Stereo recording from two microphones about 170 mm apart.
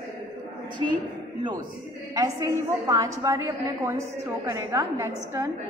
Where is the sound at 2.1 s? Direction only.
20° right (ahead or behind).